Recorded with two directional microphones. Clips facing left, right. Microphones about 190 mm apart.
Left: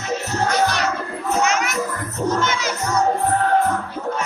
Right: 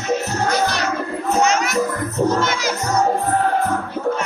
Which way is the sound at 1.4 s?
35° right (ahead or behind).